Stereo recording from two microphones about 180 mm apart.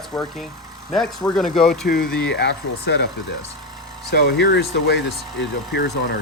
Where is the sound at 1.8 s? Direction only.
50° left (ahead or behind).